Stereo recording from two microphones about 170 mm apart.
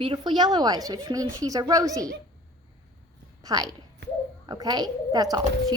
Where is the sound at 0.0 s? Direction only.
30° right (ahead or behind).